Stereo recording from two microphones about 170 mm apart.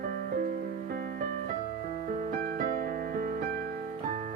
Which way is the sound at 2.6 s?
55° right (ahead or behind).